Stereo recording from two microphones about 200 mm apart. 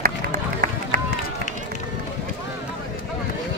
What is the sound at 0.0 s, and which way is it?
Run, 45° right (ahead or behind).